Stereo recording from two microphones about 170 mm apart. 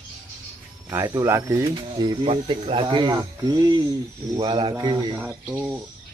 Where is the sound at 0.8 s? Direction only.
20° right (ahead or behind).